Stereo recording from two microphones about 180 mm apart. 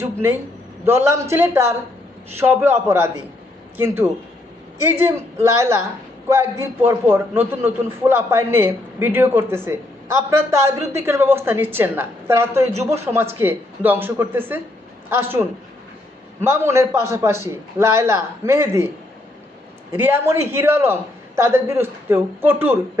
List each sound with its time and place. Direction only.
0.0 s a man's voice: 15° right (ahead or behind)
19.9 s a man's voice: 15° right (ahead or behind)